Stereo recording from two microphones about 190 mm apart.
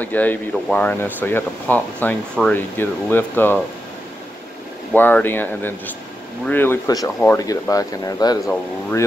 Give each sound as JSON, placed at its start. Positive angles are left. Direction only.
{"t": 0.0, "sound": "speech", "side_deg": 10}
{"t": 4.9, "sound": "speech", "side_deg": 10}